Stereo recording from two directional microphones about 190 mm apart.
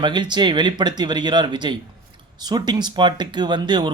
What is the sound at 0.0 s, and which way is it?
A man's voice, 25° right (ahead or behind).